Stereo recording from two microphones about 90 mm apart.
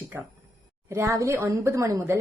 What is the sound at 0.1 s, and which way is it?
A woman's voice, 30° right (ahead or behind).